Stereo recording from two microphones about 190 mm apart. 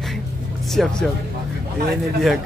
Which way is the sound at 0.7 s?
Centre (ahead or behind).